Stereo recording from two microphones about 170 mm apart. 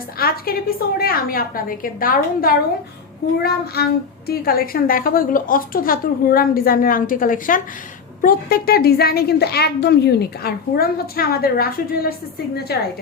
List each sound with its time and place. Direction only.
0.2 s a woman's voice: 60° left (ahead or behind)
3.8 s a woman's voice: 65° left (ahead or behind)